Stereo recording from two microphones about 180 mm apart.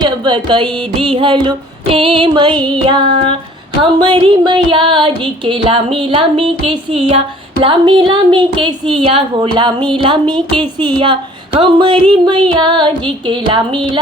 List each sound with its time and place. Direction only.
0.0 s a woman's voice: 25° right (ahead or behind)